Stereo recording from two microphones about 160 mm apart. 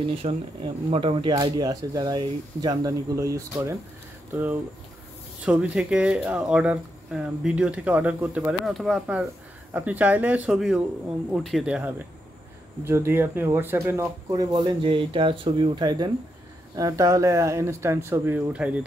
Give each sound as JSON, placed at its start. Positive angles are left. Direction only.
{"t": 0.2, "sound": "speech", "side_deg": -40}
{"t": 1.3, "sound": "speech", "side_deg": -20}
{"t": 9.8, "sound": "speech", "side_deg": -10}
{"t": 10.5, "sound": "speech", "side_deg": 0}